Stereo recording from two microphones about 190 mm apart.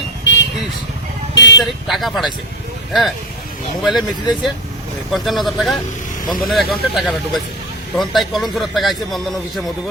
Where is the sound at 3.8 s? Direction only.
Centre (ahead or behind).